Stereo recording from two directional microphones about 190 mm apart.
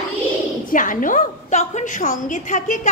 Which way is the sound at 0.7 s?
45° left (ahead or behind).